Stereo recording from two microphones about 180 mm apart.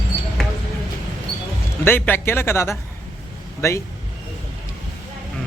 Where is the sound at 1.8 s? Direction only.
10° left (ahead or behind).